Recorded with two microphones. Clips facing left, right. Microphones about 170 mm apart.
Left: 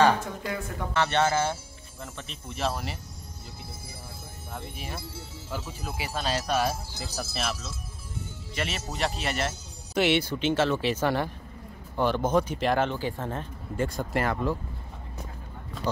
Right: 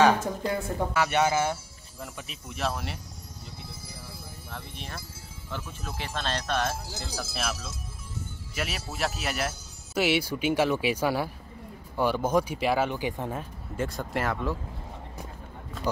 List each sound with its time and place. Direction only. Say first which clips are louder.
0.4 s speech: right 4 dB; 30° right (ahead or behind)
0.9 s speech: left 1 dB; 10° right (ahead or behind)
4.7 s speech: left 3 dB; 10° left (ahead or behind)